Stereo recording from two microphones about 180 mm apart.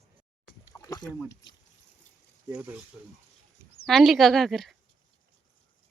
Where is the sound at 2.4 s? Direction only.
15° right (ahead or behind).